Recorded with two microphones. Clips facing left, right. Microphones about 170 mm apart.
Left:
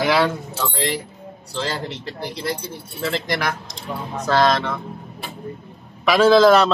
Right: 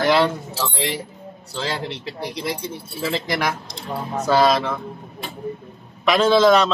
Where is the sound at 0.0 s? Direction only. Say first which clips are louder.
Right 1 dB; centre (ahead or behind).